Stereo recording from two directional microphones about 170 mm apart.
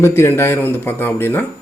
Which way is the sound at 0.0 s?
15° left (ahead or behind).